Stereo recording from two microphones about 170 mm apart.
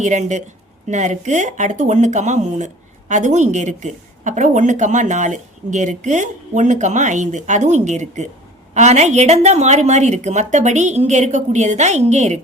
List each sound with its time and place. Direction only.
0.0 s speech: 45° right (ahead or behind)